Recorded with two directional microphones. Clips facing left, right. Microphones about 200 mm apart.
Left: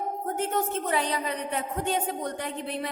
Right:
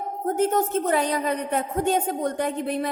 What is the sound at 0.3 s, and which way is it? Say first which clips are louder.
A woman's voice: right 7 dB; 45° right (ahead or behind).